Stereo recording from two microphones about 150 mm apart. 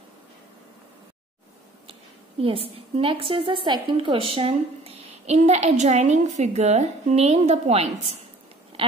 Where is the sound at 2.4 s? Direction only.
40° right (ahead or behind).